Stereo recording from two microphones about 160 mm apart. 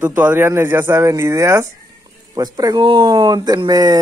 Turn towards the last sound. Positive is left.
turn(degrees=-25)  # may be behind; listen again after turning